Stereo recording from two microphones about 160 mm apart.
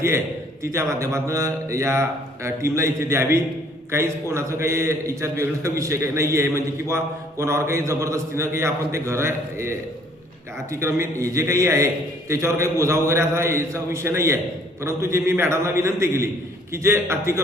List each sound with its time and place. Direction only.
0.6 s a man's voice: 20° right (ahead or behind)